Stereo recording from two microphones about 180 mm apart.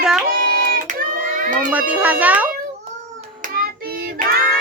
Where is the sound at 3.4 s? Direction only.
55° right (ahead or behind).